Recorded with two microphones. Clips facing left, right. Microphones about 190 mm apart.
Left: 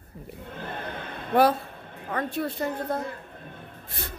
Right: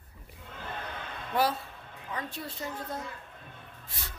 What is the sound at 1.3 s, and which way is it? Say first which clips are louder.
A woman's voice: left 8 dB; 55° left (ahead or behind).